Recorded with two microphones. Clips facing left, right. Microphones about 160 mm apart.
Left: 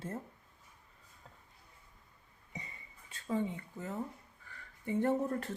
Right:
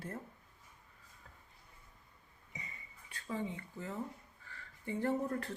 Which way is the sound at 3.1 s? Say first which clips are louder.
Left 3 dB; 25° left (ahead or behind).